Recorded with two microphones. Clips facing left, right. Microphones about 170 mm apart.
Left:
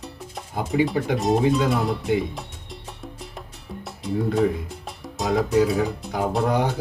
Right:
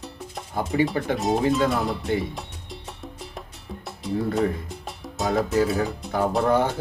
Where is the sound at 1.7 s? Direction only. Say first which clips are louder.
Left 2 dB; centre (ahead or behind).